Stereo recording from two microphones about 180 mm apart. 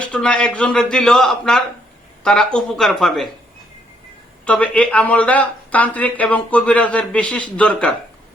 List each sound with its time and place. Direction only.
0.1 s a man's voice: 5° left (ahead or behind)
4.4 s speech: 5° left (ahead or behind)